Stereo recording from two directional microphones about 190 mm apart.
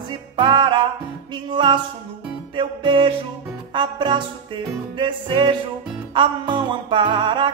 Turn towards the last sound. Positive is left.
turn(degrees=-25)  # may be behind; listen again after turning